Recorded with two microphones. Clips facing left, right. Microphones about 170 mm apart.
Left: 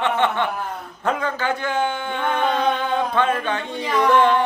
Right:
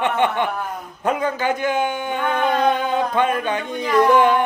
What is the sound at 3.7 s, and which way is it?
Speech, centre (ahead or behind).